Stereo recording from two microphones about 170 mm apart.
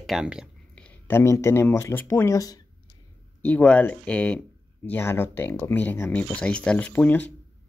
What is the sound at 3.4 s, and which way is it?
Speech, 10° left (ahead or behind).